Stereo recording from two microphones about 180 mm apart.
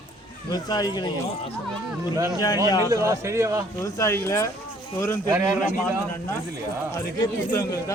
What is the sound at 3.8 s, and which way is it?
Speech, 15° left (ahead or behind).